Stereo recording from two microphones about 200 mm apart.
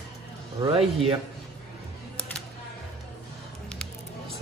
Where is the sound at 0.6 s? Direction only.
20° right (ahead or behind).